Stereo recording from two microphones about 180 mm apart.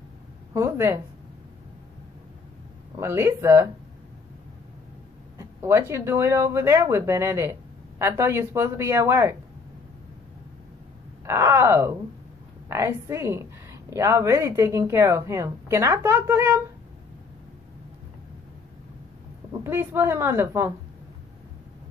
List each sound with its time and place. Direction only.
0.5 s a woman's voice: 15° right (ahead or behind)
3.0 s a woman's voice: 15° right (ahead or behind)
5.4 s a woman's voice: 15° right (ahead or behind)
11.2 s a woman's voice: 15° right (ahead or behind)
19.6 s a woman's voice: 10° right (ahead or behind)